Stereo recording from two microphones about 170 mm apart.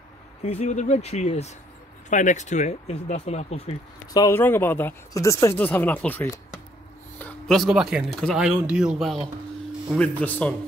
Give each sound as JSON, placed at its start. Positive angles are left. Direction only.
{"t": 0.4, "sound": "speech", "side_deg": 40}
{"t": 4.1, "sound": "speech", "side_deg": 20}
{"t": 4.4, "sound": "speech", "side_deg": 10}